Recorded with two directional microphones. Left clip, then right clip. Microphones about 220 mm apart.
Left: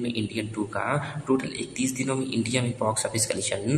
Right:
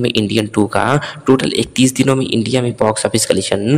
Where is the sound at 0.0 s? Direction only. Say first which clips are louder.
Right 14 dB; 45° right (ahead or behind).